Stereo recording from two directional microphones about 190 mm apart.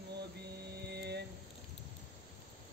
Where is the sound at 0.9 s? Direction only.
60° right (ahead or behind).